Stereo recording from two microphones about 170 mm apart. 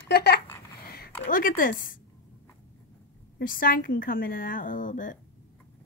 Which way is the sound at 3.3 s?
55° left (ahead or behind).